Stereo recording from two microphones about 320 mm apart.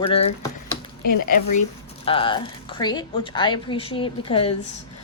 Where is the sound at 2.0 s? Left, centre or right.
Centre.